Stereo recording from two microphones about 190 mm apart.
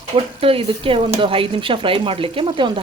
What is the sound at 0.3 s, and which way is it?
Speech, 30° right (ahead or behind).